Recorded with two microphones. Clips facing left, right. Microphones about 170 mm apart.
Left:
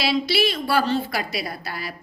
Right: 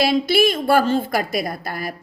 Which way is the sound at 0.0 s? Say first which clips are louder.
Right 5 dB; 50° right (ahead or behind).